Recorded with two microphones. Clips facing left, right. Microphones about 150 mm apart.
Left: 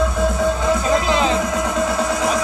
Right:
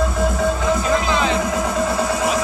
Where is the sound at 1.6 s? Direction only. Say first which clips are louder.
Even; 5° right (ahead or behind).